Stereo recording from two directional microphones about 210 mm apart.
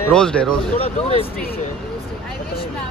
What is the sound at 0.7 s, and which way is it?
Speech, 30° left (ahead or behind).